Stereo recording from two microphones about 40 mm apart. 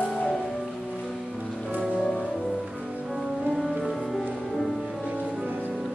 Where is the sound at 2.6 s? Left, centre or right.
Centre.